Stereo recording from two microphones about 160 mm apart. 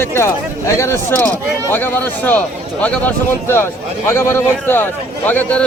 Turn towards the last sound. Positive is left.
turn(degrees=10)  # may be behind; listen again after turning